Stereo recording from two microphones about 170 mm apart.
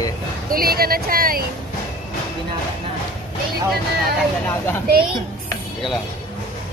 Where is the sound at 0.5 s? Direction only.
60° right (ahead or behind).